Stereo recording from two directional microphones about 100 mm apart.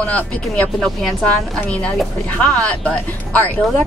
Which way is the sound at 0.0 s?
15° left (ahead or behind).